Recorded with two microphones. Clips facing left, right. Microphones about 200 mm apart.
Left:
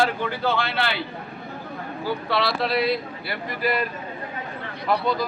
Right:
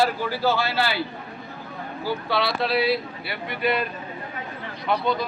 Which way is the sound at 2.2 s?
Centre (ahead or behind).